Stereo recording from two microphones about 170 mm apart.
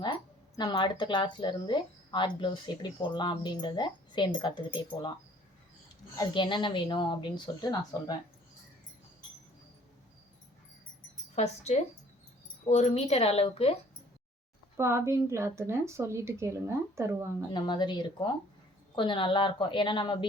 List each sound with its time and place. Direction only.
0.0 s speech: 25° left (ahead or behind)
6.1 s speech: 30° left (ahead or behind)
11.3 s speech: 40° left (ahead or behind)
14.8 s a woman's voice: 15° right (ahead or behind)
17.5 s speech: 25° left (ahead or behind)